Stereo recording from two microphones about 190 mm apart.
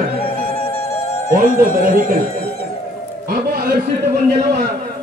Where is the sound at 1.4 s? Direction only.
45° right (ahead or behind).